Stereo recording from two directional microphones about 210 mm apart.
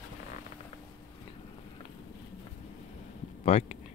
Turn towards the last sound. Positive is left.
turn(degrees=30)  # may be behind; listen again after turning